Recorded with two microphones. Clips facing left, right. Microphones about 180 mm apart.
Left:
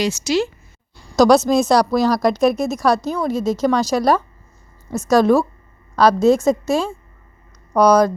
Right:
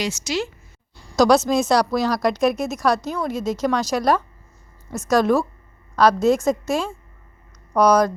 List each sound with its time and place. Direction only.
0.0 s a woman's voice: 35° left (ahead or behind)